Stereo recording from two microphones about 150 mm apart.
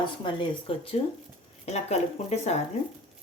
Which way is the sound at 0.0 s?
35° left (ahead or behind).